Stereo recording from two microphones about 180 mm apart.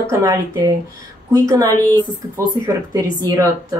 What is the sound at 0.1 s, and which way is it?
Speech, 15° right (ahead or behind).